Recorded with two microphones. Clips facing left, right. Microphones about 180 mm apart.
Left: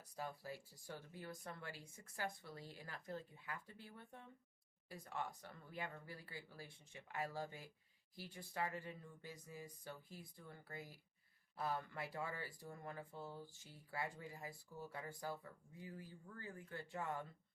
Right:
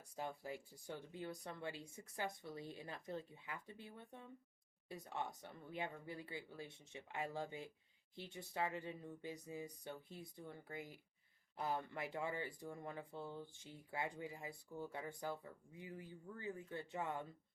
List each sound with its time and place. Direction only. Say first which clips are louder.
0.2 s speech: right 2 dB; 20° right (ahead or behind)